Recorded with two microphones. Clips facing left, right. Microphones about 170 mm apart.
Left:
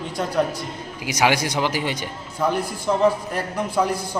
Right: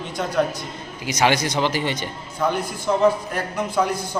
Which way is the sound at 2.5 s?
30° left (ahead or behind).